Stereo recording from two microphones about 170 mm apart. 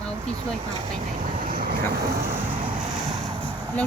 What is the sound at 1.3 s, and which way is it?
Vehicle, 55° right (ahead or behind).